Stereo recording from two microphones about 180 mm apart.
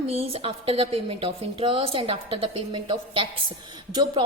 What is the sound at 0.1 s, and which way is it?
A woman's voice, 35° right (ahead or behind).